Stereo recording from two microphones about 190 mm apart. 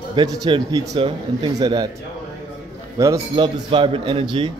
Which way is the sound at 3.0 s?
20° right (ahead or behind).